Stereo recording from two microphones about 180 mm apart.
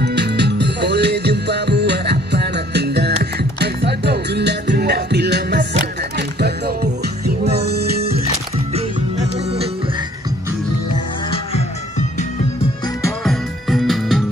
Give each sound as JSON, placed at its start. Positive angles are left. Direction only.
{"t": 0.0, "sound": "music", "side_deg": -65}
{"t": 13.2, "sound": "music", "side_deg": 0}